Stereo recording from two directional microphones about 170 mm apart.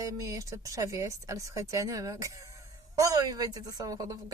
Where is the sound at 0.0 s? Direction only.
20° right (ahead or behind).